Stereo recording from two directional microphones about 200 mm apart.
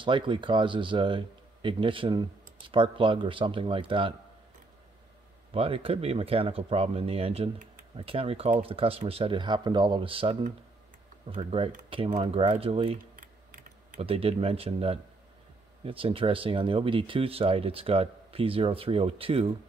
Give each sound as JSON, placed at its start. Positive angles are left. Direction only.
{"t": 0.0, "sound": "speech", "side_deg": -25}
{"t": 5.5, "sound": "speech", "side_deg": -30}
{"t": 13.1, "sound": "typing", "side_deg": -40}
{"t": 15.8, "sound": "speech", "side_deg": -30}